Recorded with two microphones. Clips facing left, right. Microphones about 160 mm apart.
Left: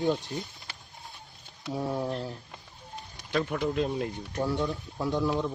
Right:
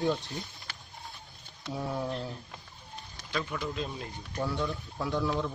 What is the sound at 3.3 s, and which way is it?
Speech, 55° left (ahead or behind).